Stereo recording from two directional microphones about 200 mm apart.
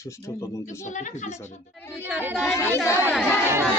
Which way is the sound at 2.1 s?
10° right (ahead or behind).